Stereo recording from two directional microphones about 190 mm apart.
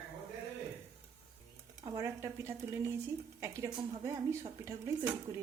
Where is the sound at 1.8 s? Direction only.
15° right (ahead or behind).